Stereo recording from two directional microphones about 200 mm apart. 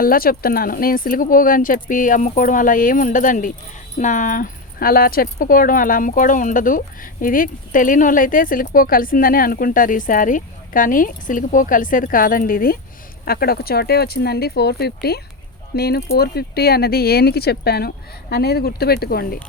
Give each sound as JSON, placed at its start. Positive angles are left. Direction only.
{"t": 0.0, "sound": "speech", "side_deg": 45}